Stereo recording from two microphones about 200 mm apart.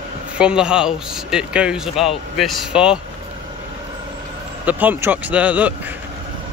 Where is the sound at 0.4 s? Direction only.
5° right (ahead or behind).